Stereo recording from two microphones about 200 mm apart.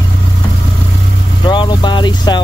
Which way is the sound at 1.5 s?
25° left (ahead or behind).